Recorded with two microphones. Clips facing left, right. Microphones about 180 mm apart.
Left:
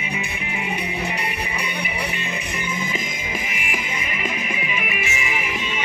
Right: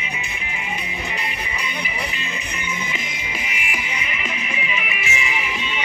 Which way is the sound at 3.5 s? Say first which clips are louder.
Left 1 dB; 45° left (ahead or behind).